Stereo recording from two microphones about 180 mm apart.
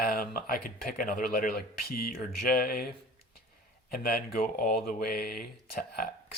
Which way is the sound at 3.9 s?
55° left (ahead or behind).